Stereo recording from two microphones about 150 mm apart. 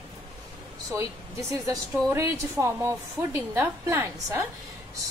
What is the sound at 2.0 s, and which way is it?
A woman's voice, 20° right (ahead or behind).